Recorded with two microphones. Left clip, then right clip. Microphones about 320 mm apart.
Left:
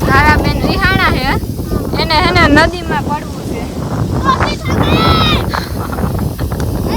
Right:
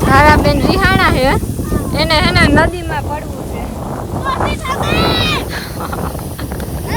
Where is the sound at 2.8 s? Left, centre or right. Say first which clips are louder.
Left 4 dB; centre.